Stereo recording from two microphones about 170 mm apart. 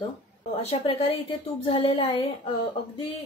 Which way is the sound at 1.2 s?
30° left (ahead or behind).